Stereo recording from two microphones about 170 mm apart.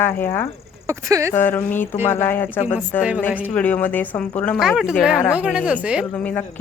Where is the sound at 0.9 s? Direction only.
15° right (ahead or behind).